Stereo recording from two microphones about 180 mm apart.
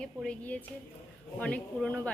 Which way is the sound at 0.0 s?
5° left (ahead or behind).